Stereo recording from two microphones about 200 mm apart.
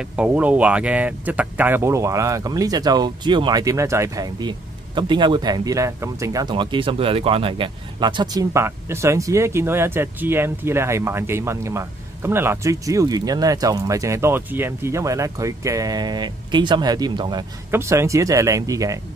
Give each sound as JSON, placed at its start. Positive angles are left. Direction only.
{"t": 0.1, "sound": "speech", "side_deg": -5}